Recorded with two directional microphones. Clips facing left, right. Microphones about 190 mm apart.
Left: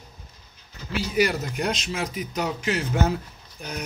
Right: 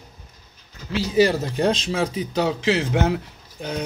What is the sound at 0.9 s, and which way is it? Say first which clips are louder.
Speech: right 5 dB; 25° right (ahead or behind).